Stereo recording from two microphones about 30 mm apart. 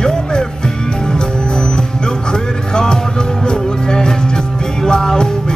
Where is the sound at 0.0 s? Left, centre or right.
Left.